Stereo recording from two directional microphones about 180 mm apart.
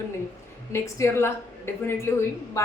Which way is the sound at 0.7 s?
15° left (ahead or behind).